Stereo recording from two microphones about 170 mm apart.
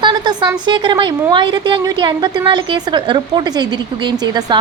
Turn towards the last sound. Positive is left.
turn(degrees=-25)  # may be behind; listen again after turning